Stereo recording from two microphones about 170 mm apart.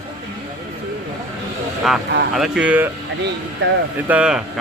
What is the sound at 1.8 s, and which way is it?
Speech, centre (ahead or behind).